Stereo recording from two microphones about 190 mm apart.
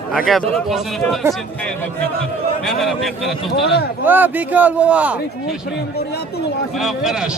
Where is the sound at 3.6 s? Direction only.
60° left (ahead or behind).